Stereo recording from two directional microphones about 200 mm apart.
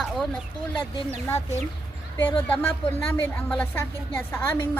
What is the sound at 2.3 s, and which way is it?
A woman's voice, 10° left (ahead or behind).